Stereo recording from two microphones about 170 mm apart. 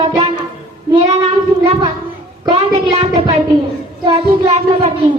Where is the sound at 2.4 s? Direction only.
35° right (ahead or behind).